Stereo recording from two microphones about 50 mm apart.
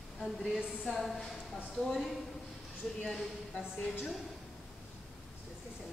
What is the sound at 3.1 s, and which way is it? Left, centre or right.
Speech, centre.